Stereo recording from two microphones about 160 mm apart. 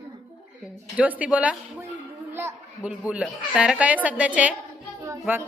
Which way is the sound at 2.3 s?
15° right (ahead or behind).